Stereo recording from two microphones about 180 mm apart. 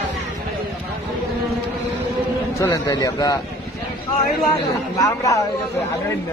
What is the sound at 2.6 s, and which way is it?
Speech, 20° left (ahead or behind).